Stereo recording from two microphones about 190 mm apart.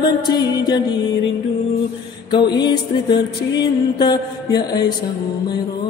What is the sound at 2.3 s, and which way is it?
Music, 25° left (ahead or behind).